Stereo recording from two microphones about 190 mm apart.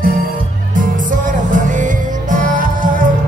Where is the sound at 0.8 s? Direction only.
45° right (ahead or behind).